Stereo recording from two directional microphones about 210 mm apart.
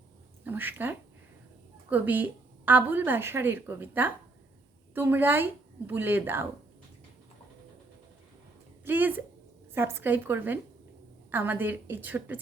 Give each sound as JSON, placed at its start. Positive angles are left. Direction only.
{"t": 0.4, "sound": "a woman's voice", "side_deg": -10}
{"t": 8.8, "sound": "a woman's voice", "side_deg": -10}